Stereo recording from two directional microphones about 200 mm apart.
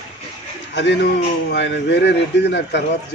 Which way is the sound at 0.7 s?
60° left (ahead or behind).